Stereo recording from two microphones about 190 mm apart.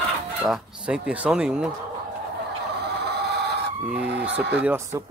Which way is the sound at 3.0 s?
60° right (ahead or behind).